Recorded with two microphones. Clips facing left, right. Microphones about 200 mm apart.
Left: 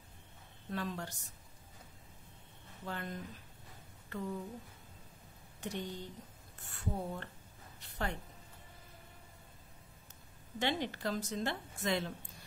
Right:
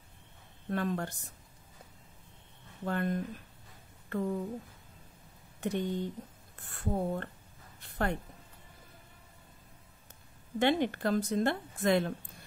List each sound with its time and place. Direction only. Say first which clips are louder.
0.7 s a woman's voice: right 7 dB; 55° right (ahead or behind)
2.8 s a woman's voice: right 10 dB; 55° right (ahead or behind)
5.6 s a woman's voice: right 9 dB; 55° right (ahead or behind)
7.8 s a sound: right 7 dB; 55° right (ahead or behind)
10.6 s a woman's voice: right 8 dB; 55° right (ahead or behind)